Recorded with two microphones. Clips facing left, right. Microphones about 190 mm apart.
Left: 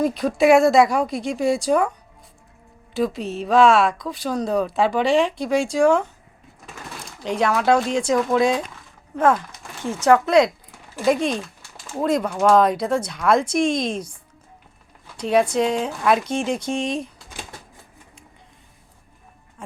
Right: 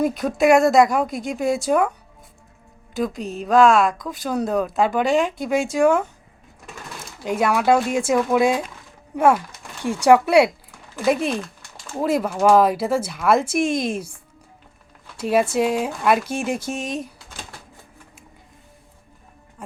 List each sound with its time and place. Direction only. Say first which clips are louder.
0.2 s a woman's voice: left 1 dB; centre (ahead or behind)
2.9 s a woman's voice: left 2 dB; centre (ahead or behind)
15.2 s a woman's voice: even; 5° right (ahead or behind)